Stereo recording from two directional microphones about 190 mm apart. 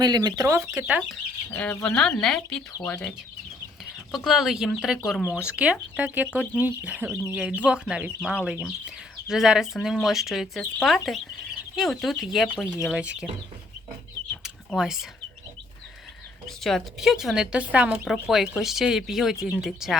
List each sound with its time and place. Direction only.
0.0 s speech: 20° right (ahead or behind)
0.8 s speech: 5° right (ahead or behind)
1.5 s speech: 5° left (ahead or behind)
14.4 s a sound: 5° right (ahead or behind)
16.5 s speech: centre (ahead or behind)